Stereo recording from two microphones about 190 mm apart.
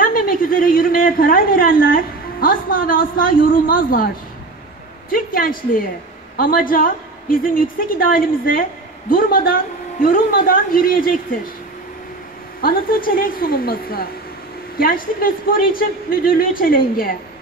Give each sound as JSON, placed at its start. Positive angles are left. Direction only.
{"t": 0.0, "sound": "a woman's voice", "side_deg": 50}
{"t": 5.1, "sound": "a woman's voice", "side_deg": 50}
{"t": 12.6, "sound": "a woman's voice", "side_deg": 50}